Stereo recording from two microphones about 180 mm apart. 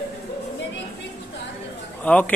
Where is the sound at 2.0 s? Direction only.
10° left (ahead or behind).